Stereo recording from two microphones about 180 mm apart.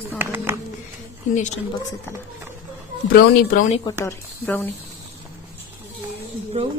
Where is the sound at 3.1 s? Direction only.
55° left (ahead or behind).